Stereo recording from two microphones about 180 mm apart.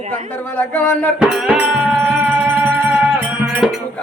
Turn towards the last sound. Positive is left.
turn(degrees=-5)  # may be behind; listen again after turning